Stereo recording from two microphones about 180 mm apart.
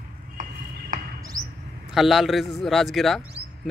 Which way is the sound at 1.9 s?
Centre (ahead or behind).